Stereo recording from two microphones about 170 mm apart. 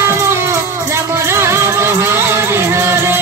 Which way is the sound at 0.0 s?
15° right (ahead or behind).